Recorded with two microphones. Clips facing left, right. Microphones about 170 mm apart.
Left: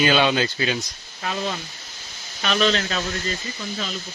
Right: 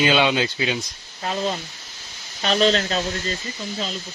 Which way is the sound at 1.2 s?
30° right (ahead or behind).